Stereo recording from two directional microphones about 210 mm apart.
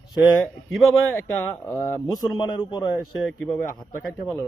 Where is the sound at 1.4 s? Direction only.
15° left (ahead or behind).